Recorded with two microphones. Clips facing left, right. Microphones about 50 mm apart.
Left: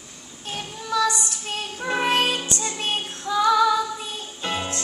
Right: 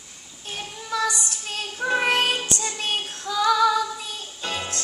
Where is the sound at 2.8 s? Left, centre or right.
Left.